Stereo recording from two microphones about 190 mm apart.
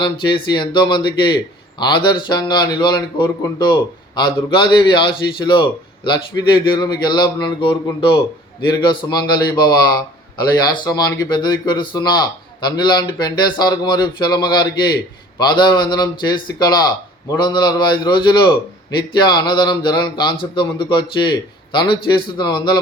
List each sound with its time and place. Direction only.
0.0 s a man's voice: 25° left (ahead or behind)
22.4 s a man's voice: 25° left (ahead or behind)